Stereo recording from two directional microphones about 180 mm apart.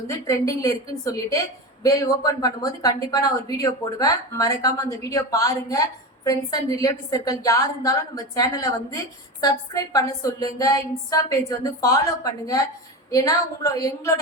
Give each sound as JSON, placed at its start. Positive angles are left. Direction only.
{"t": 0.1, "sound": "a woman's voice", "side_deg": 15}